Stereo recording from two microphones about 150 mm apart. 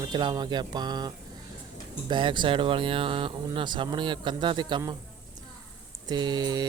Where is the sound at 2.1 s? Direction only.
30° right (ahead or behind).